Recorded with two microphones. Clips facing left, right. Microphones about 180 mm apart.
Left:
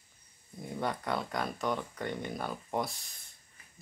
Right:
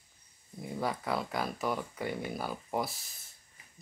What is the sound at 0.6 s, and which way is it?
Speech, 5° right (ahead or behind).